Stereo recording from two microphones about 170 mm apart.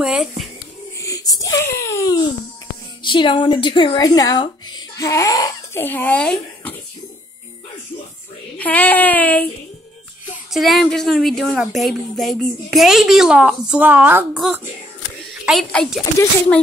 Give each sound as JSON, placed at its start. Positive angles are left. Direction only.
{"t": 0.0, "sound": "a child's voice", "side_deg": -5}
{"t": 0.9, "sound": "speech", "side_deg": 20}
{"t": 8.5, "sound": "speech", "side_deg": 10}
{"t": 10.5, "sound": "a woman's voice", "side_deg": 0}